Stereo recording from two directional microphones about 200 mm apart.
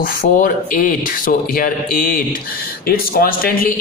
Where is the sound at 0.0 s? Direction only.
45° left (ahead or behind).